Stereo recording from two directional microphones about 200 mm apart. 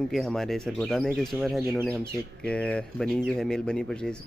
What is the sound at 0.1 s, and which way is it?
Speech, centre (ahead or behind).